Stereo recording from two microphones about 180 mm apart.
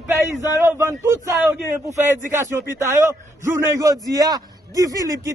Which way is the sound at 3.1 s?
15° right (ahead or behind).